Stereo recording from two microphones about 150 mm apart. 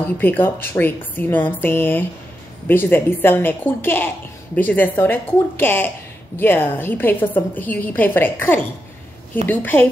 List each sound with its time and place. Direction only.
0.0 s a woman's voice: 15° left (ahead or behind)